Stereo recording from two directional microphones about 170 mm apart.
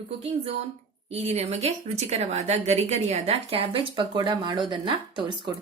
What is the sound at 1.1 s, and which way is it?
Speech, 40° right (ahead or behind).